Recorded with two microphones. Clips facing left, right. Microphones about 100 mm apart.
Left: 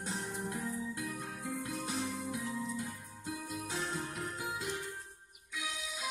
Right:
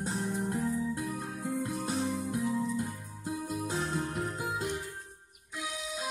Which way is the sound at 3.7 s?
40° right (ahead or behind).